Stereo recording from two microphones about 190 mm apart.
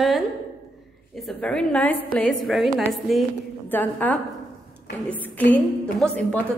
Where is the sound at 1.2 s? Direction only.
5° left (ahead or behind).